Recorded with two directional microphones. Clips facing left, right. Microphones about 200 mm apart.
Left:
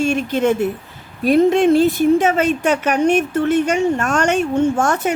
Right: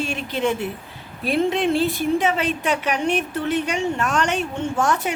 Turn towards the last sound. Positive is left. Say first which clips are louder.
# left 5 dB
turn(degrees=50)  # may be behind; listen again after turning